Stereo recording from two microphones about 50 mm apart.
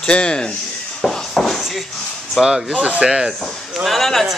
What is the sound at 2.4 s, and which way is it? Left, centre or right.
Speech, centre.